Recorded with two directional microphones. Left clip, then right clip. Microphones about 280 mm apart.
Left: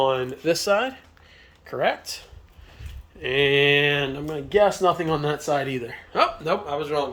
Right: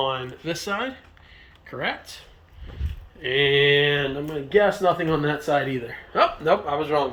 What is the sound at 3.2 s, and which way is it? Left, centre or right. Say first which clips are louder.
Speech: even; centre.